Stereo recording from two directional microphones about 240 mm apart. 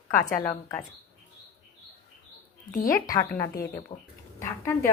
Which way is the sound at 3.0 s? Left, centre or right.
Centre.